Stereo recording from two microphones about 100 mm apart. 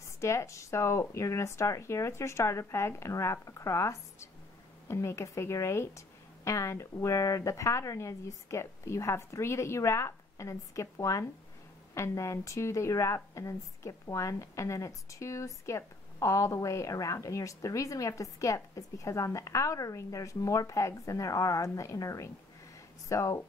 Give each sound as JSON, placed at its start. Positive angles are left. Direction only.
{"t": 0.0, "sound": "a woman's voice", "side_deg": 30}